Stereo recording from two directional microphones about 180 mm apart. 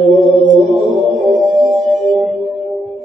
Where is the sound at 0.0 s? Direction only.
Centre (ahead or behind).